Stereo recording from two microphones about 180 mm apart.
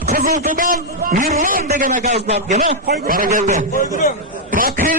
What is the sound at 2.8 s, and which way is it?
A man's voice, 55° right (ahead or behind).